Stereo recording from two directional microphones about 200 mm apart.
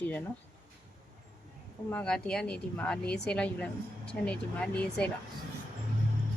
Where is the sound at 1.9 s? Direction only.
5° left (ahead or behind).